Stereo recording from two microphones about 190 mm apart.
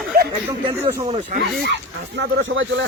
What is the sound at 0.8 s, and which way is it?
Speech, 15° right (ahead or behind).